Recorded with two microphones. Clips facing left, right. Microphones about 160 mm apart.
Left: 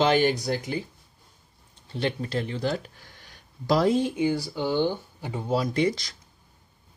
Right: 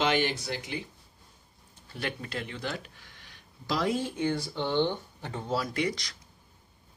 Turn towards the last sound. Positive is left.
turn(degrees=30)  # may be behind; listen again after turning